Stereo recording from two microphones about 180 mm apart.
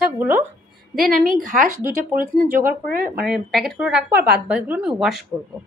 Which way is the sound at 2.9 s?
55° right (ahead or behind).